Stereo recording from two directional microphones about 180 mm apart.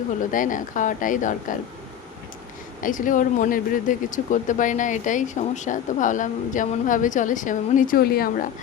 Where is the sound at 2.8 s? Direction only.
45° left (ahead or behind).